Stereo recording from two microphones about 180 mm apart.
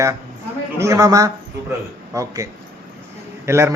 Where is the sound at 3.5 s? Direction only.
15° right (ahead or behind).